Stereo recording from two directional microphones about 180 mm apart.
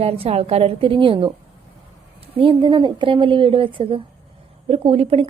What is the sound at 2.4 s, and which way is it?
A woman's voice, 30° right (ahead or behind).